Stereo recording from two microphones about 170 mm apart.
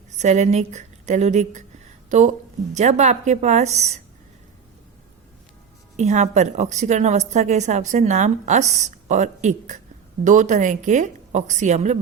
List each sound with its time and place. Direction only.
0.2 s a woman's voice: 45° right (ahead or behind)
6.0 s a woman's voice: 40° right (ahead or behind)